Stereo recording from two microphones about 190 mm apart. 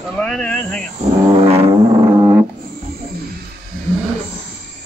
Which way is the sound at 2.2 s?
20° right (ahead or behind).